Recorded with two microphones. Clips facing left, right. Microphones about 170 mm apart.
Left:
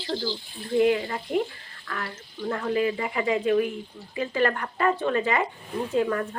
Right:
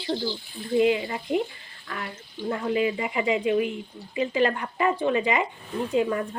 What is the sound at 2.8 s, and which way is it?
Speech, 10° right (ahead or behind).